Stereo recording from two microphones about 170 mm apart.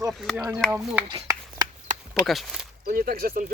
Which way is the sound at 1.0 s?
25° right (ahead or behind).